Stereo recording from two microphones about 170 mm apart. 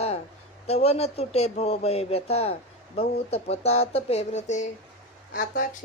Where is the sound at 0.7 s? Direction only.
35° left (ahead or behind).